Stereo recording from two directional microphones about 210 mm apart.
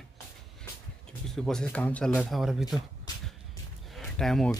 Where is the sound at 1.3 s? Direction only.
Centre (ahead or behind).